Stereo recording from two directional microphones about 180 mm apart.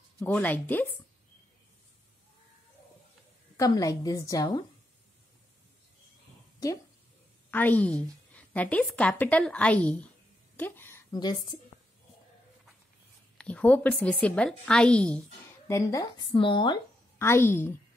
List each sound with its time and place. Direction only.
0.2 s a woman's voice: 10° left (ahead or behind)
3.5 s a woman's voice: 20° left (ahead or behind)
7.5 s a woman's voice: 10° left (ahead or behind)
13.4 s a woman's voice: 5° left (ahead or behind)
15.7 s a woman's voice: 20° left (ahead or behind)
17.2 s a woman's voice: 15° left (ahead or behind)